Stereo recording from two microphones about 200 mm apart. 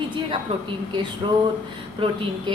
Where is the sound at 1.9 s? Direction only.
25° right (ahead or behind).